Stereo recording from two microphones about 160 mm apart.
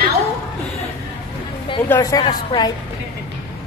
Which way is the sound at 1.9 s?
20° left (ahead or behind).